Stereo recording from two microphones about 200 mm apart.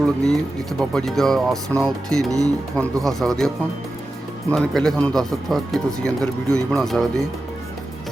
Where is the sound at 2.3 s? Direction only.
15° right (ahead or behind).